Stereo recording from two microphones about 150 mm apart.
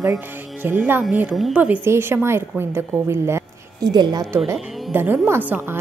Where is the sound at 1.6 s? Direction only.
15° right (ahead or behind).